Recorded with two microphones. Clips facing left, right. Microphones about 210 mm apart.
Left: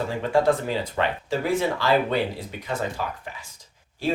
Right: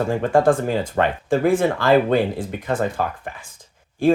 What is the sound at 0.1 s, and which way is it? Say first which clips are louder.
Speech: right 4 dB; 50° right (ahead or behind).